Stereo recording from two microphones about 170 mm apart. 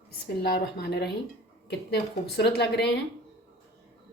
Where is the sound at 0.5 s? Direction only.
70° left (ahead or behind).